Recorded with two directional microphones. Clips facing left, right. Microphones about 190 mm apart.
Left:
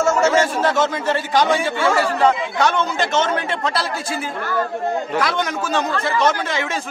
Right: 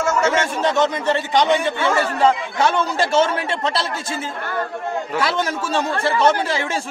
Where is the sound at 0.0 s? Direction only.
25° left (ahead or behind).